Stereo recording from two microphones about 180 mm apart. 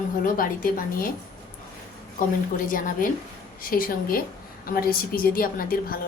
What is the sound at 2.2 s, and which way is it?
A woman's voice, 50° left (ahead or behind).